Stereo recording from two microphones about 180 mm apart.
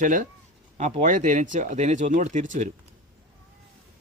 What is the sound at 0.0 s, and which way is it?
Speech, 50° right (ahead or behind).